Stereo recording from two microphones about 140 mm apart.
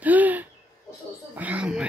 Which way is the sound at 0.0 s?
10° right (ahead or behind).